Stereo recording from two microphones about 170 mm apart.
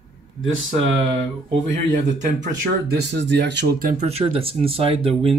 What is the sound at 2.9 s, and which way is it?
Speech, 85° right.